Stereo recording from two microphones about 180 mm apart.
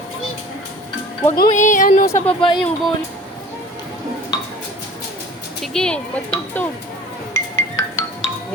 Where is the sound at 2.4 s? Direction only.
30° left (ahead or behind).